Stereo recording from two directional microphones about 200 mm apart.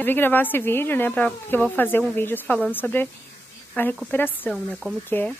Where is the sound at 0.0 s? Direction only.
10° left (ahead or behind).